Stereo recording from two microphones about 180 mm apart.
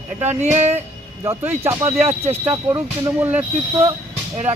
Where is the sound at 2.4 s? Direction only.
10° right (ahead or behind).